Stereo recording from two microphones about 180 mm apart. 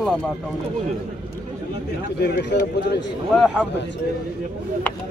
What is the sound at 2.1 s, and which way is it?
Speech, 65° left (ahead or behind).